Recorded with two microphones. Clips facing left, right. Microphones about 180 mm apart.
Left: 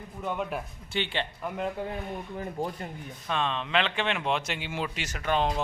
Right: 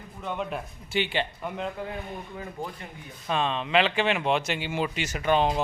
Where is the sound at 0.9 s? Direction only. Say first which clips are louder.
Right 3 dB; 5° right (ahead or behind).